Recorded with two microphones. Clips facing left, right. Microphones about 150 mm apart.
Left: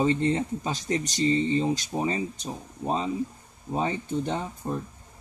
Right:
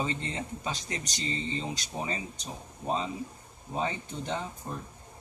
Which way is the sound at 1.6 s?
40° left (ahead or behind).